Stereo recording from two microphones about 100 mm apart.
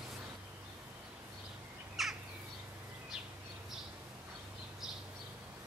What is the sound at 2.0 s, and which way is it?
Crow, centre (ahead or behind).